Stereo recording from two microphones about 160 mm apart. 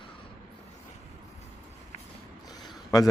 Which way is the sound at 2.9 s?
25° left (ahead or behind).